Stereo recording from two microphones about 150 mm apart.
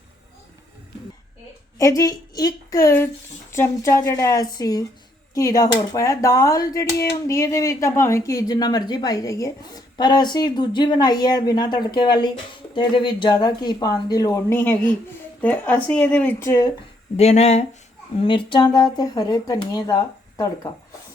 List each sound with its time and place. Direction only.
1.8 s speech: 20° left (ahead or behind)
16.4 s speech: 25° left (ahead or behind)
17.2 s speech: 45° left (ahead or behind)
18.2 s speech: 35° left (ahead or behind)